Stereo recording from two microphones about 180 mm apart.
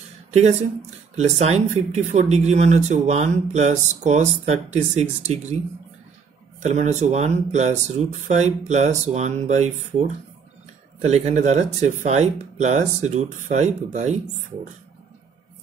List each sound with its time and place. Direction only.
0.3 s speech: 35° right (ahead or behind)
6.6 s speech: 40° right (ahead or behind)